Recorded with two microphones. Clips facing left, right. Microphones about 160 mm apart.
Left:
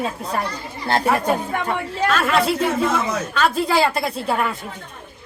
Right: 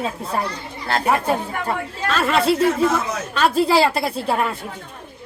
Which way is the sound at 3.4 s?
35° right (ahead or behind).